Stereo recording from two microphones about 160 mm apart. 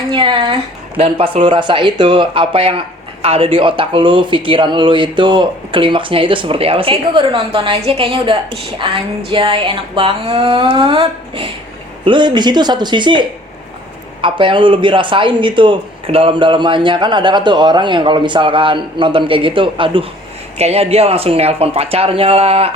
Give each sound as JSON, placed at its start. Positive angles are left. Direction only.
{"t": 0.1, "sound": "a woman's voice", "side_deg": -30}